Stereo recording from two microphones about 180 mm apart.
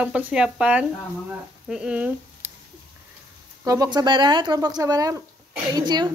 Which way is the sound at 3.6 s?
20° right (ahead or behind).